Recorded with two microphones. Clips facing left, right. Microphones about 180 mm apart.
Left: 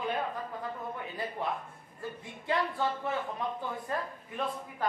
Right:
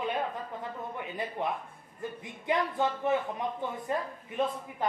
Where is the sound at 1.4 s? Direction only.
20° right (ahead or behind).